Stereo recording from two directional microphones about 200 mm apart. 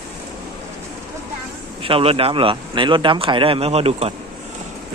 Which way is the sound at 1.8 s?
30° right (ahead or behind).